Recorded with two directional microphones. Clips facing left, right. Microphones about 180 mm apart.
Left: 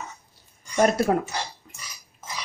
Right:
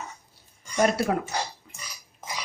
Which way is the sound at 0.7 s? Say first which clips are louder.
Left 3 dB; 40° left (ahead or behind).